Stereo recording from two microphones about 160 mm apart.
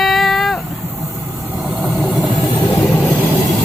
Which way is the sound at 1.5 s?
5° right (ahead or behind).